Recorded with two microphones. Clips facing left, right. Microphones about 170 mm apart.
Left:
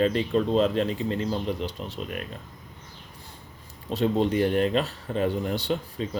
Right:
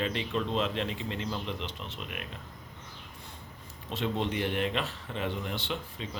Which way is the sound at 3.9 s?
40° left (ahead or behind).